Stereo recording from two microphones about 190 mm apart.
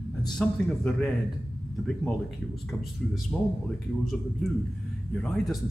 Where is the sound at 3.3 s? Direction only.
10° left (ahead or behind).